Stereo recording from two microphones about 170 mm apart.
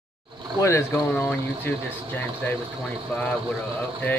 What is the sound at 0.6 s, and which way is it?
Speech, 15° left (ahead or behind).